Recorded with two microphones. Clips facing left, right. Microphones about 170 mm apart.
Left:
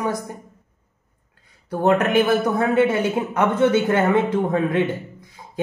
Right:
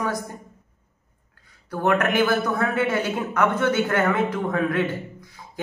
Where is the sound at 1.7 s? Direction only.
25° left (ahead or behind).